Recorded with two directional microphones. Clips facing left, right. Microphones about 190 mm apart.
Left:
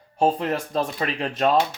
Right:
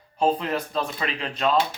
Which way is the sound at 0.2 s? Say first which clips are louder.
Left 1 dB; 45° left (ahead or behind).